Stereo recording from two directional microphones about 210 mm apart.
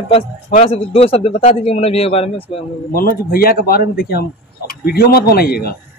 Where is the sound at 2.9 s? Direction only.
45° left (ahead or behind).